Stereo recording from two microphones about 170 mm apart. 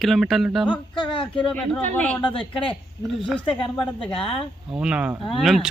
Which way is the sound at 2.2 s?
30° left (ahead or behind).